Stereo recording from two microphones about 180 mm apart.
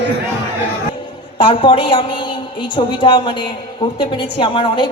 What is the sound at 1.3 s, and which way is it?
A man's voice, 30° left (ahead or behind).